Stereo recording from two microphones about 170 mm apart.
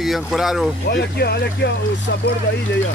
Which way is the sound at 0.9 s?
70° left (ahead or behind).